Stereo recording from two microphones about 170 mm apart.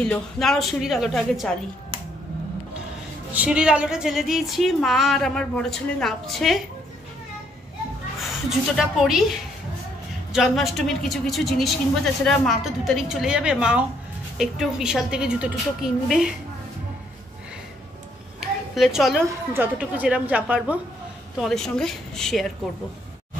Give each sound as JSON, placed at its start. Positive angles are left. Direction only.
{"t": 0.0, "sound": "speech", "side_deg": 5}
{"t": 3.3, "sound": "speech", "side_deg": -5}
{"t": 8.2, "sound": "a woman's voice", "side_deg": 0}
{"t": 18.4, "sound": "a sound", "side_deg": 0}
{"t": 19.2, "sound": "a woman's voice", "side_deg": -10}
{"t": 21.4, "sound": "speech", "side_deg": 0}